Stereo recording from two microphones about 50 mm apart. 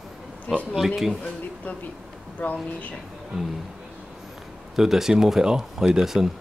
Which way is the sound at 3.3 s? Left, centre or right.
Centre.